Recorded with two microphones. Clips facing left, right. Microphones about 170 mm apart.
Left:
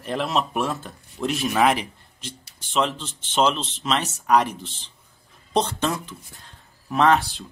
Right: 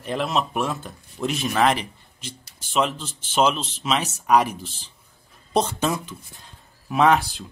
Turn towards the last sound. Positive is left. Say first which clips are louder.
# right 1 dB
turn(degrees=0)  # may be behind; listen again after turning